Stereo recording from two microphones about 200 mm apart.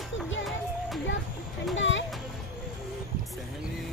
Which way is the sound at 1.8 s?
70° left (ahead or behind).